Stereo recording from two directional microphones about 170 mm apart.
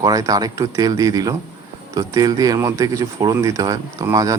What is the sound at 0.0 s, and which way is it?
Speech, 20° right (ahead or behind).